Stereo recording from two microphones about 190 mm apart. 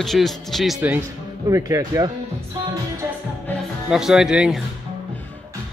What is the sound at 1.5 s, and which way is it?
Speech, 15° right (ahead or behind).